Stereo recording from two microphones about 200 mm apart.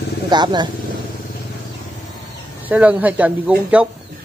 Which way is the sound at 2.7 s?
5° right (ahead or behind).